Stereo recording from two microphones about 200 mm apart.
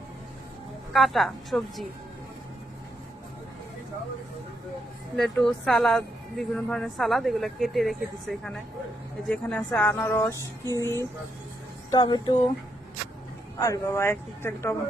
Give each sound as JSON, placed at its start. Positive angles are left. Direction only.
{"t": 0.9, "sound": "speech", "side_deg": 0}
{"t": 5.1, "sound": "speech", "side_deg": 0}
{"t": 13.6, "sound": "speech", "side_deg": 15}